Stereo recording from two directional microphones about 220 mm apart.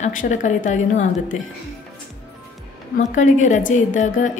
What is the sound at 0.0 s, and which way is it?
A woman's voice, 35° left (ahead or behind).